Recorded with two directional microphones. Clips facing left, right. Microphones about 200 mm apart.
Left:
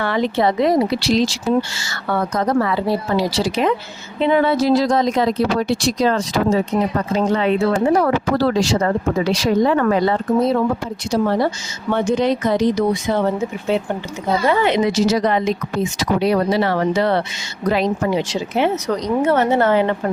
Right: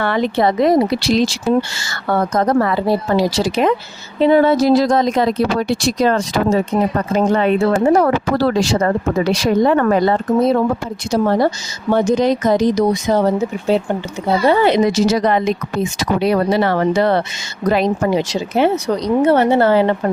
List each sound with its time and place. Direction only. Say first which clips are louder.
0.0 s speech: right 2 dB; 55° right (ahead or behind)
8.4 s speech: right 1 dB; 60° right (ahead or behind); by 20.0 s 35° right (ahead or behind)